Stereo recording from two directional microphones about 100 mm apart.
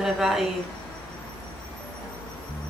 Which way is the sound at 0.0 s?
5° right (ahead or behind).